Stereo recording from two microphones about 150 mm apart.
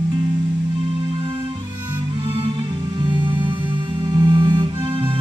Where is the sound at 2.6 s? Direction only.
30° right (ahead or behind).